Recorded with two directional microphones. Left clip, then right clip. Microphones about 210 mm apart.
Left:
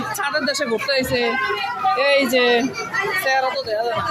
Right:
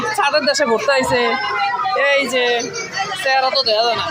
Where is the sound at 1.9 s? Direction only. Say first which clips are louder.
Even; 20° left (ahead or behind).